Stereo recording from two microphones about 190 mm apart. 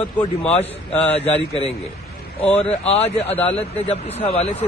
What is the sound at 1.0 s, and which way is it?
Speech, 35° left (ahead or behind).